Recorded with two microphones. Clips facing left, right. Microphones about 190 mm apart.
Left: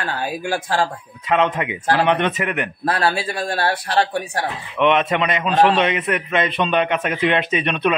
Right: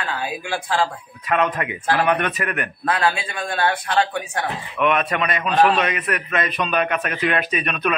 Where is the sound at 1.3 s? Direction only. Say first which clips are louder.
Left 2 dB; 20° left (ahead or behind).